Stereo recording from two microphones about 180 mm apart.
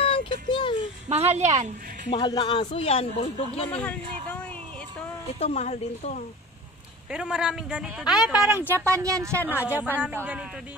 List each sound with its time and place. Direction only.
0.0 s a sound: 30° left (ahead or behind)
1.1 s a woman's voice: 35° right (ahead or behind)
2.0 s speech: 25° left (ahead or behind)
5.4 s speech: 35° left (ahead or behind)
7.1 s a man's voice: 5° right (ahead or behind)
8.1 s speech: 20° left (ahead or behind)
8.4 s a woman's voice: 5° right (ahead or behind)